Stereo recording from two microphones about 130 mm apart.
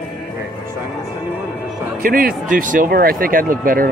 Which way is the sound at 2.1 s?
90° right.